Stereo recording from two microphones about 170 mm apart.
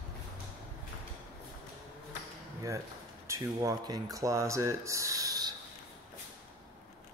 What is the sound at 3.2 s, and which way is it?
Speech, 20° right (ahead or behind).